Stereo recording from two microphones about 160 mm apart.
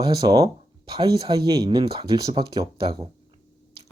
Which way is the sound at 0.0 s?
25° right (ahead or behind).